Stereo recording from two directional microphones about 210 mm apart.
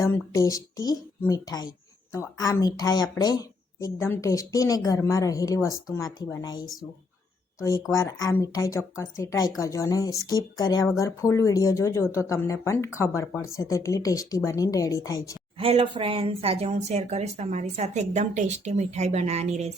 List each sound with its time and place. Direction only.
0.0 s speech: 15° left (ahead or behind)
7.9 s speech: 15° left (ahead or behind)
15.5 s speech: 25° right (ahead or behind)